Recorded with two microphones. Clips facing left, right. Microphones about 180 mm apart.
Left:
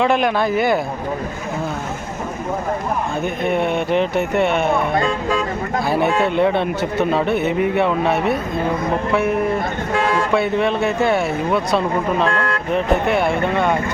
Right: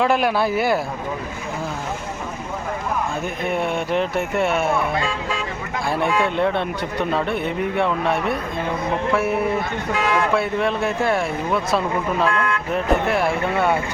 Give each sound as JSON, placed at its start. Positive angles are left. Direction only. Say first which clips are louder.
{"t": 0.0, "sound": "a man's voice", "louder": "left 2 dB", "side_deg": -5}
{"t": 3.4, "sound": "a man's voice", "louder": "left 4 dB", "side_deg": 0}
{"t": 4.9, "sound": "speech", "louder": "left 6 dB", "side_deg": 40}
{"t": 6.2, "sound": "a man's voice", "louder": "left 4 dB", "side_deg": 0}
{"t": 12.3, "sound": "vehicle", "louder": "left 1 dB", "side_deg": 40}
{"t": 12.7, "sound": "a man's voice", "louder": "left 3 dB", "side_deg": 0}